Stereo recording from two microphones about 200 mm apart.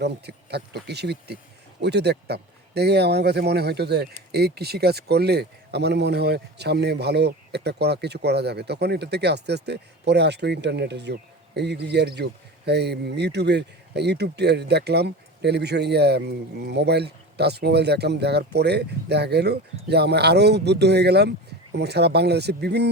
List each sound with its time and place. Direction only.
0.0 s speech: 55° right (ahead or behind)